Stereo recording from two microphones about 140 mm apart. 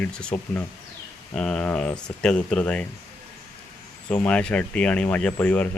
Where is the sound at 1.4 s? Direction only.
5° left (ahead or behind).